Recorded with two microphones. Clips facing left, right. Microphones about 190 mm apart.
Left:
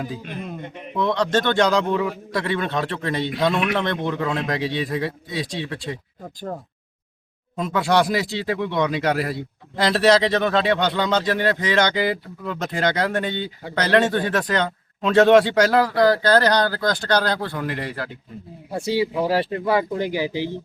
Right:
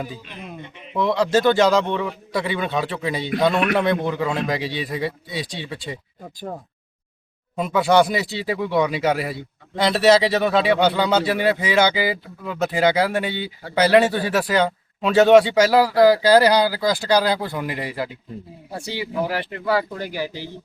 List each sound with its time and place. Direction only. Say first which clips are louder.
0.9 s speech: right 2 dB; 5° right (ahead or behind)
7.5 s speech: right 3 dB; 5° right (ahead or behind)
18.9 s speech: left 4 dB; 30° left (ahead or behind)